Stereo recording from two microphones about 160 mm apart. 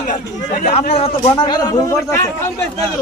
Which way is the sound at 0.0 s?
55° left (ahead or behind).